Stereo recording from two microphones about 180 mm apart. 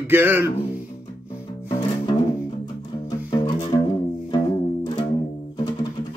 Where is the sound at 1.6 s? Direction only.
25° left (ahead or behind).